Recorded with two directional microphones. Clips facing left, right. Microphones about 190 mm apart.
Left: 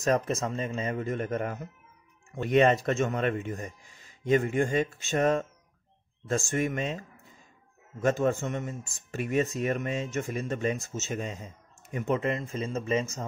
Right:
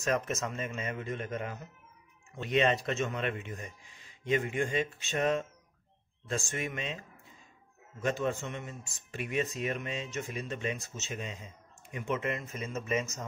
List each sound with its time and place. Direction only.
0.0 s a man's voice: 35° left (ahead or behind)